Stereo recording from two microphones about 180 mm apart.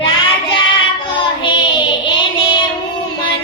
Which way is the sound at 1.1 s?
25° left (ahead or behind).